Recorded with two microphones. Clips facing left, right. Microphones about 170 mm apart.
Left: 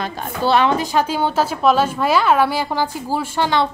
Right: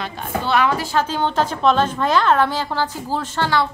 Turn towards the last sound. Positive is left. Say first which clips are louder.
# left 2 dB
turn(degrees=15)  # may be behind; listen again after turning